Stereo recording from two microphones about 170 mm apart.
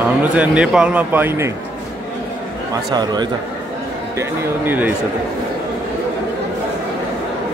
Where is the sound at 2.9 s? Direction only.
25° right (ahead or behind).